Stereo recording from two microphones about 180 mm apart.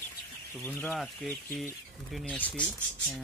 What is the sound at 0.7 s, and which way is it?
Speech, 10° left (ahead or behind).